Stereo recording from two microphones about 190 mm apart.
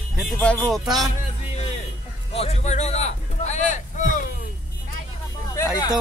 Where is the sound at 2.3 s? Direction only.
35° left (ahead or behind).